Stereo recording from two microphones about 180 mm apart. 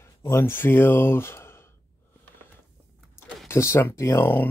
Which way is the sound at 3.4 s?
15° left (ahead or behind).